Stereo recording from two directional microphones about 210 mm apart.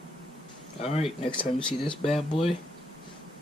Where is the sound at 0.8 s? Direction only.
30° left (ahead or behind).